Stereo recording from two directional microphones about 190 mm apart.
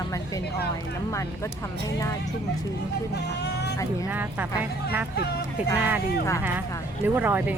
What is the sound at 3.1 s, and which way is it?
Speech, 60° left (ahead or behind).